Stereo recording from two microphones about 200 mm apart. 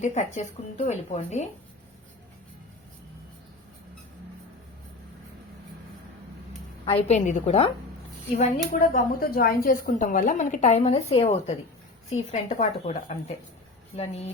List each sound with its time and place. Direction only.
0.0 s a woman's voice: 35° left (ahead or behind)
6.8 s a woman's voice: 30° left (ahead or behind)
8.7 s a woman's voice: 45° left (ahead or behind)